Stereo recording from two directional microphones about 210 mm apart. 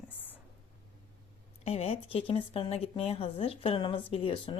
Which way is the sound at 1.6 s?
30° left (ahead or behind).